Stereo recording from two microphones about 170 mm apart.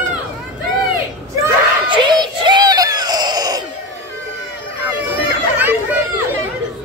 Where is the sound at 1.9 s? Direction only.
25° right (ahead or behind).